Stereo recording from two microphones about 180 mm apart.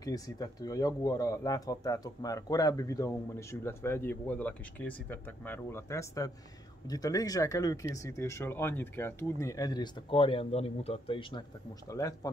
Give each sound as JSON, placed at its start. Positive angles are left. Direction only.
{"t": 0.0, "sound": "speech", "side_deg": 20}
{"t": 11.9, "sound": "speech", "side_deg": 20}